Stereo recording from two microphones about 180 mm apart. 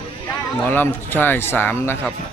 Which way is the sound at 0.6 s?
10° left (ahead or behind).